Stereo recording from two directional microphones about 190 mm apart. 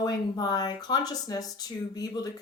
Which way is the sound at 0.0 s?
20° left (ahead or behind).